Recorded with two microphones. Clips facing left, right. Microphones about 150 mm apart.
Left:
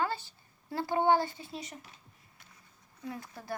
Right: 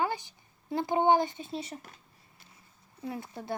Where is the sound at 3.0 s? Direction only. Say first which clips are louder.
Right 4 dB; 25° right (ahead or behind).